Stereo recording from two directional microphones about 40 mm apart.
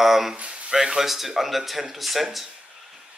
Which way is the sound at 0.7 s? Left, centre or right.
Centre.